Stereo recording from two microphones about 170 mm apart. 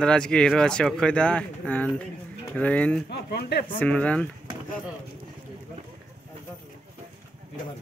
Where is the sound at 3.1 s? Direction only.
75° left (ahead or behind).